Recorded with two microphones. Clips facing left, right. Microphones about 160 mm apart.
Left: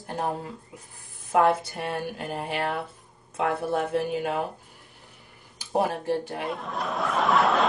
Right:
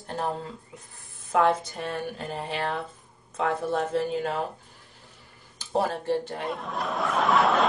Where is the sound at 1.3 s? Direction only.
10° left (ahead or behind).